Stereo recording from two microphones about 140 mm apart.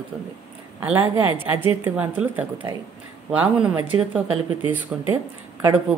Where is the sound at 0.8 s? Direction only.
15° right (ahead or behind).